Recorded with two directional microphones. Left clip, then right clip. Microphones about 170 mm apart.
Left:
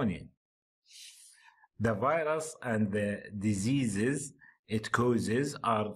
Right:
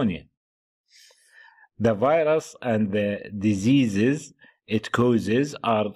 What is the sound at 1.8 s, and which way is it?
Speech, 20° right (ahead or behind).